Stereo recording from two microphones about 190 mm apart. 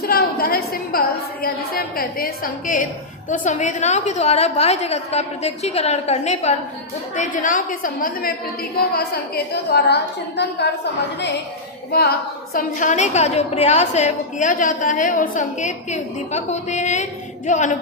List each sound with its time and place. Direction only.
0.0 s a woman's voice: 50° left (ahead or behind)
11.9 s a woman's voice: 55° left (ahead or behind)
12.5 s a woman's voice: 40° left (ahead or behind)